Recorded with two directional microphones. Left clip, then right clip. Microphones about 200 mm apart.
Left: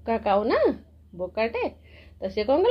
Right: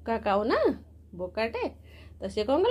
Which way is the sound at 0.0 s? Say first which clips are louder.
Left 4 dB; 10° right (ahead or behind).